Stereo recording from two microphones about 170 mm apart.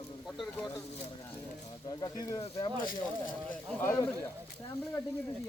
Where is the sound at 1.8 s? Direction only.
25° left (ahead or behind).